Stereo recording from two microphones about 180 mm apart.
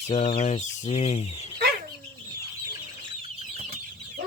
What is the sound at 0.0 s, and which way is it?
Speech, 40° left (ahead or behind).